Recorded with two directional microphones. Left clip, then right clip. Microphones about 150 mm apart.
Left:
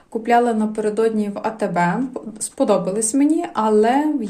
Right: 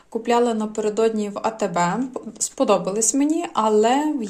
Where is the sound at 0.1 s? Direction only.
10° right (ahead or behind).